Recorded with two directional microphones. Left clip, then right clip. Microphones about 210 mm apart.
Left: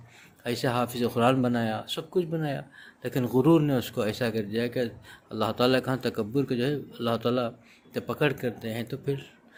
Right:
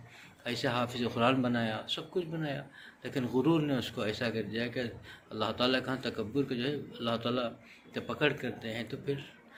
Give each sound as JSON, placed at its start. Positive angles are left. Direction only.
{"t": 0.4, "sound": "speech", "side_deg": 55}